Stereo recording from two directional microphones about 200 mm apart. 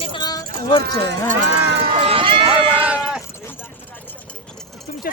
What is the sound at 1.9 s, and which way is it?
Speech, 30° right (ahead or behind).